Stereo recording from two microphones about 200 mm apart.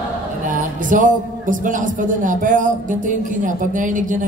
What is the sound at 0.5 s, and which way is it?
A man's voice, 40° right (ahead or behind).